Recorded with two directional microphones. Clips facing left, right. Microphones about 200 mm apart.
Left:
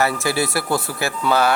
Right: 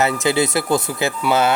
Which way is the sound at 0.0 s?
20° right (ahead or behind).